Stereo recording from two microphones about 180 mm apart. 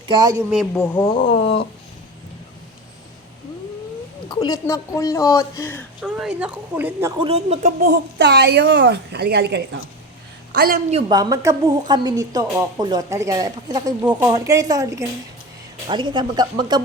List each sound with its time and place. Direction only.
0.1 s a woman's voice: 20° right (ahead or behind)
0.7 s speech: 10° left (ahead or behind)
1.3 s a sound: 30° left (ahead or behind)
4.3 s speech: 20° left (ahead or behind)
6.0 s a woman's voice: 5° right (ahead or behind)
7.2 s speech: 35° right (ahead or behind)
7.8 s a woman's voice: 65° right (ahead or behind)
11.1 s a woman's voice: 20° right (ahead or behind)